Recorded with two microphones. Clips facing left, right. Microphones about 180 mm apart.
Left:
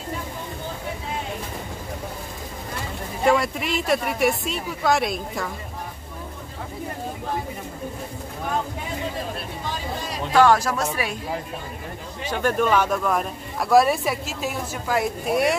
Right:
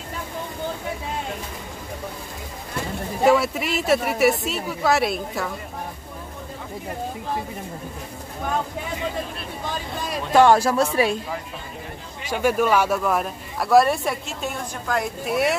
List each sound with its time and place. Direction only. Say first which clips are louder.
3.3 s speech: right 2 dB; 5° right (ahead or behind)
10.3 s speech: right 2 dB; 25° right (ahead or behind)
12.3 s speech: right 1 dB; 10° right (ahead or behind)